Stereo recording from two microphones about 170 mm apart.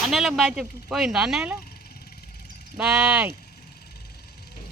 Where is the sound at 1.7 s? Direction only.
65° left (ahead or behind).